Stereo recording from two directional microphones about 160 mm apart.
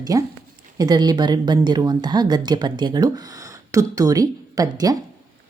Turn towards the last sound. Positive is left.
turn(degrees=-25)  # may be behind; listen again after turning